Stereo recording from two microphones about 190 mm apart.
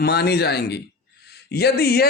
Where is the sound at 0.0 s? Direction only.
60° left (ahead or behind).